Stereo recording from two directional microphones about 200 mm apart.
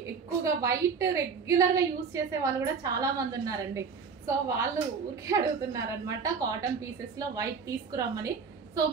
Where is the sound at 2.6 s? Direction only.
15° right (ahead or behind).